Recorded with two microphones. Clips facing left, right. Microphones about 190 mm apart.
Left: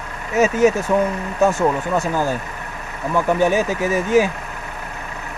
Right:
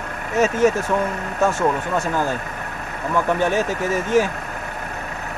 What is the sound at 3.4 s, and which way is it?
Speech, 10° left (ahead or behind).